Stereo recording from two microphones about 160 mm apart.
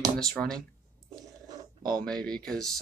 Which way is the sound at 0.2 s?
5° left (ahead or behind).